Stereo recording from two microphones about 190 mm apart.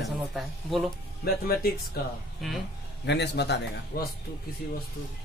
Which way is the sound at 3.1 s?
65° left (ahead or behind).